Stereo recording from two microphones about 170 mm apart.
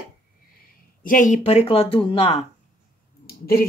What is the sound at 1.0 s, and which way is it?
Speech, 50° left (ahead or behind).